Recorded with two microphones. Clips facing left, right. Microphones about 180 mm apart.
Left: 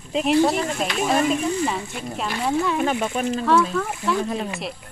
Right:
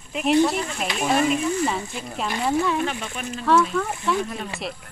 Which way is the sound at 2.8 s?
45° left (ahead or behind).